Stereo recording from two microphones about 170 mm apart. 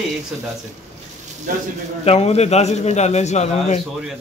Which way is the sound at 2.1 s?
40° left (ahead or behind).